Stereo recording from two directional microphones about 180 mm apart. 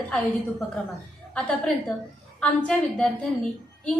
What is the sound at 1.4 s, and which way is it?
A woman's voice, 5° left (ahead or behind).